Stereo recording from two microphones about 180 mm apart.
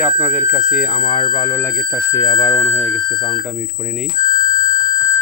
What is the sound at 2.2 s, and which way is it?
Speech, 20° left (ahead or behind).